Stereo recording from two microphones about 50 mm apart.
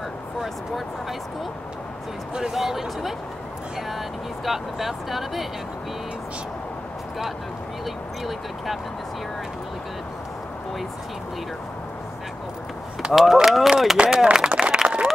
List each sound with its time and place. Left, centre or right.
2.5 s speech: centre
4.5 s speech: centre
13.1 s speech: centre
13.9 s speech: right
14.3 s a sound: centre